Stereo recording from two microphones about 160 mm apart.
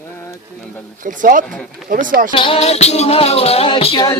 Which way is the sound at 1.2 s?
55° right (ahead or behind).